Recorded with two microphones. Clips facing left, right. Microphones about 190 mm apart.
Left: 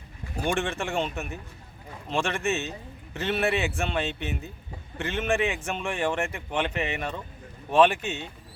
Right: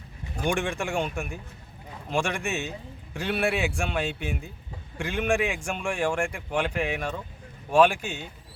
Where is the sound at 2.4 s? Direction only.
15° right (ahead or behind).